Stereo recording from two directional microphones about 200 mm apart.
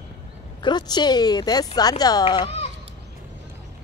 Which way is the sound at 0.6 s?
20° left (ahead or behind).